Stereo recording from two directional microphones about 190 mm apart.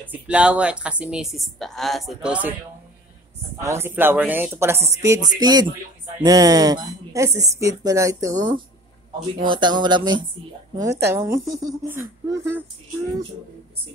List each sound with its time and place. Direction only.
0.0 s speech: 5° right (ahead or behind)
3.5 s a woman's voice: 15° right (ahead or behind)